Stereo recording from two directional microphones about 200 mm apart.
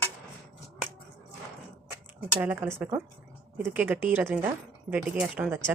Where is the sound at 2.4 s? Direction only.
10° right (ahead or behind).